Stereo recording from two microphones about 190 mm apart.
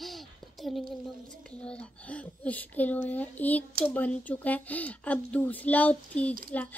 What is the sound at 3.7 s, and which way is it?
Speech, 50° right (ahead or behind).